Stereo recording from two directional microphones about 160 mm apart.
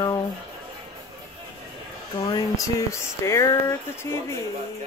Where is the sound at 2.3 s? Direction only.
20° left (ahead or behind).